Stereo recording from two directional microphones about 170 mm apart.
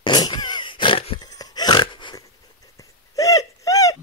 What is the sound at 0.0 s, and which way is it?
Burping, 25° left (ahead or behind).